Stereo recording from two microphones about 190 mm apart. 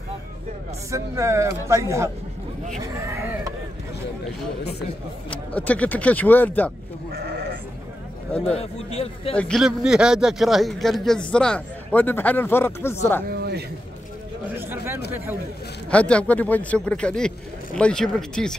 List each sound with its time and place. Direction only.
0.9 s speech: 15° right (ahead or behind)
5.3 s speech: 5° left (ahead or behind)
8.5 s a man's voice: 30° left (ahead or behind)
9.4 s a man's voice: centre (ahead or behind)
13.3 s a man's voice: 60° right (ahead or behind)
14.6 s speech: 10° right (ahead or behind)
15.9 s a man's voice: 5° left (ahead or behind)